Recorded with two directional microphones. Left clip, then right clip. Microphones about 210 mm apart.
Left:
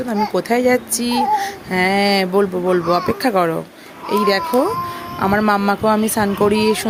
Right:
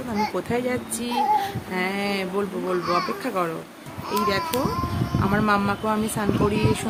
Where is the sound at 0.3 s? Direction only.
30° left (ahead or behind).